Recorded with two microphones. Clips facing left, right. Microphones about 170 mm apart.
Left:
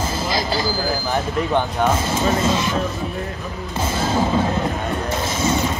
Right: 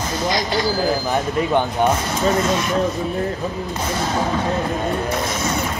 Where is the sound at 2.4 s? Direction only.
25° left (ahead or behind).